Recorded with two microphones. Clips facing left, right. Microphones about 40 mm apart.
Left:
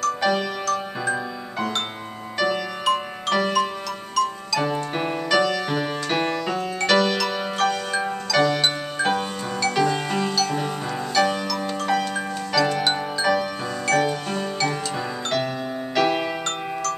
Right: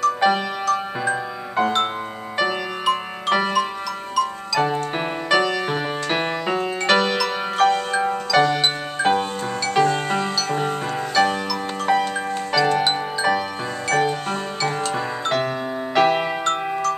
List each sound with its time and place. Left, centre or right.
0.0 s music: right
2.3 s music: centre
7.2 s music: centre
9.8 s music: right
15.2 s music: right